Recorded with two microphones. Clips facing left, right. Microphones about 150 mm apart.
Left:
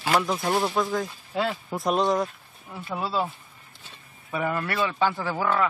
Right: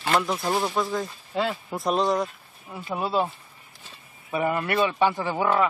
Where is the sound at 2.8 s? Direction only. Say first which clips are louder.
Right 2 dB; 15° right (ahead or behind).